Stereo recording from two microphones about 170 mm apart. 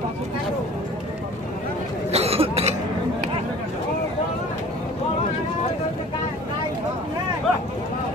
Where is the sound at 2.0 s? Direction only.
35° right (ahead or behind).